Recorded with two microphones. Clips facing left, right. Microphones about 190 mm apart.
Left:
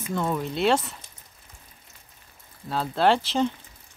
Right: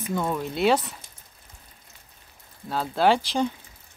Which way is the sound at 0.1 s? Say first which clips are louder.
Even; 5° right (ahead or behind).